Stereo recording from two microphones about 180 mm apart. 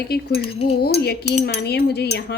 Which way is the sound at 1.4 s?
65° left (ahead or behind).